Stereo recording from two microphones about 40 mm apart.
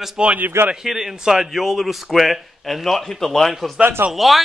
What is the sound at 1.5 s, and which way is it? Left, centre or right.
Speech, centre.